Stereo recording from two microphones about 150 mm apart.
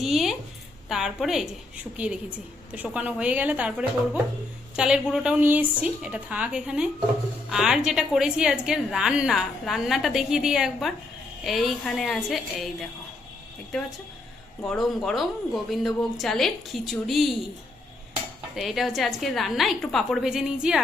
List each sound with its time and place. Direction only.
0.0 s a woman's voice: centre (ahead or behind)
14.6 s a woman's voice: 5° left (ahead or behind)
18.5 s a woman's voice: centre (ahead or behind)